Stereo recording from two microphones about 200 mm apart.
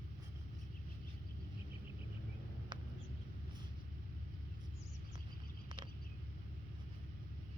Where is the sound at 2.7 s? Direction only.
25° right (ahead or behind).